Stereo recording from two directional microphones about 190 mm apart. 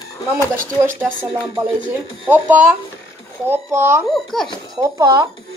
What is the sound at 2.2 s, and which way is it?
A child's voice, 10° right (ahead or behind).